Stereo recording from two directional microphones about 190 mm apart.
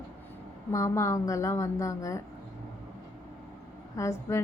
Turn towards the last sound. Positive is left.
turn(degrees=15)  # may be behind; listen again after turning